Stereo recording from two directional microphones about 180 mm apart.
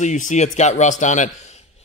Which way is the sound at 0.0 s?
40° left (ahead or behind).